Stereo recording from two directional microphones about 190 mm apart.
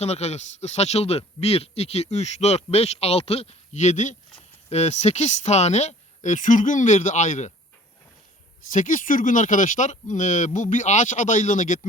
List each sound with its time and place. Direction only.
0.0 s speech: 35° left (ahead or behind)
8.7 s speech: 40° left (ahead or behind)